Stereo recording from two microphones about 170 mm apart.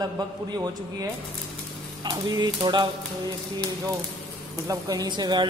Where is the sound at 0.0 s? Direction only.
25° right (ahead or behind).